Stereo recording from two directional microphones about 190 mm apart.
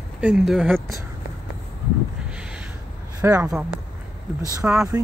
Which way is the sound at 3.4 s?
5° right (ahead or behind).